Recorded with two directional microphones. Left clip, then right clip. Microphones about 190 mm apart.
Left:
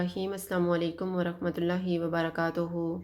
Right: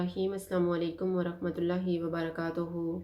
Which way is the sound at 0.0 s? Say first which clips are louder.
Even; 40° left (ahead or behind).